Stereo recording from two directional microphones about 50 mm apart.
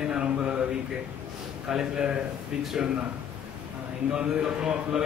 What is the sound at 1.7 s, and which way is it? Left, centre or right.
A man's voice, centre.